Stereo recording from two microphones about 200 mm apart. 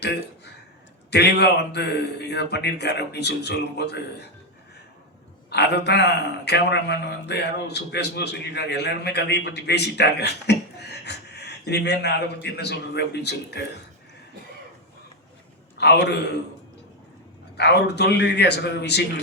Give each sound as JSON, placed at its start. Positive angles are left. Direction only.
{"t": 1.1, "sound": "a man's voice", "side_deg": 55}
{"t": 5.5, "sound": "a man's voice", "side_deg": 55}
{"t": 15.8, "sound": "a man's voice", "side_deg": 55}
{"t": 17.6, "sound": "a man's voice", "side_deg": 55}